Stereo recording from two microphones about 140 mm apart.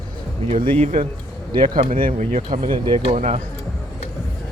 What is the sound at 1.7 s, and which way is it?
Speech, 80° right.